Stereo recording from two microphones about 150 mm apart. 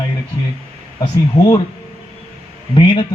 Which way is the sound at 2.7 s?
35° left (ahead or behind).